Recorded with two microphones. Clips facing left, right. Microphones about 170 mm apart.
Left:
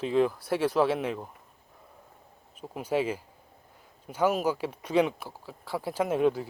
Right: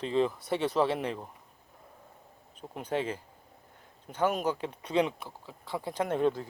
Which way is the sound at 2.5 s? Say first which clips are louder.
Left 4 dB; 10° left (ahead or behind).